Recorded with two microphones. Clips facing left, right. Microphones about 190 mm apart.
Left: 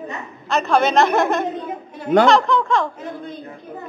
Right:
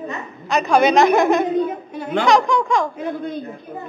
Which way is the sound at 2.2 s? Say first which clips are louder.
Even; 15° right (ahead or behind).